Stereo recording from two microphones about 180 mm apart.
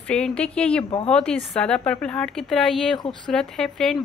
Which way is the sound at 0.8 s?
30° left (ahead or behind).